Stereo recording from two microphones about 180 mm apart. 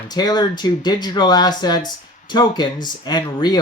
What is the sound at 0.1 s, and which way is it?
Speech, 20° left (ahead or behind).